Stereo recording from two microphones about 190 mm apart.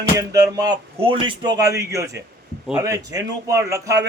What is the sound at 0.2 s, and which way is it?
A man's voice, 20° right (ahead or behind).